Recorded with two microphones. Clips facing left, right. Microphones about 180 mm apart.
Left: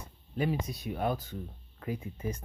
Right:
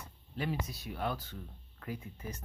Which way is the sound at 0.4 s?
15° left (ahead or behind).